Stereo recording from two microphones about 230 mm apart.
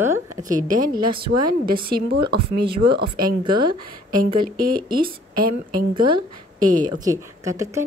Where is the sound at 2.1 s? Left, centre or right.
Right.